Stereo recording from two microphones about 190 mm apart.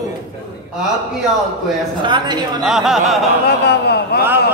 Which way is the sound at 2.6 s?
Centre (ahead or behind).